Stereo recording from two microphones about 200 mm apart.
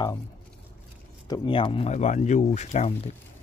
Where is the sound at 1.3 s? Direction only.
25° left (ahead or behind).